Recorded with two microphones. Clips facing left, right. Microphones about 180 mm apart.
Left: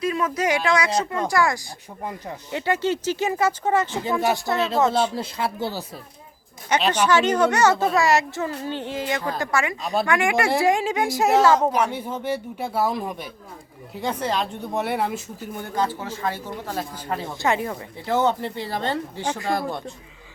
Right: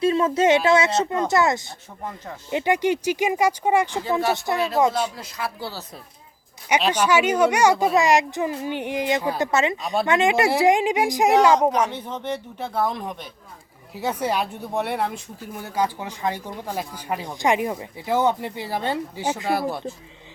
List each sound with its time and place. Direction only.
0.0 s speech: 25° right (ahead or behind); by 4.0 s 10° right (ahead or behind)
4.5 s speech: 25° left (ahead or behind)
6.7 s speech: 10° right (ahead or behind)
9.8 s speech: centre (ahead or behind)
10.1 s speech: 20° right (ahead or behind)
11.7 s speech: 10° left (ahead or behind)
13.9 s speech: 5° right (ahead or behind)
14.7 s speech: centre (ahead or behind)